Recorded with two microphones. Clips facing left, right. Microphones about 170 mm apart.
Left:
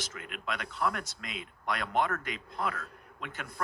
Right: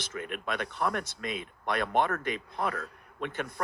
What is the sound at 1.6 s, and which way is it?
A man's voice, 30° right (ahead or behind).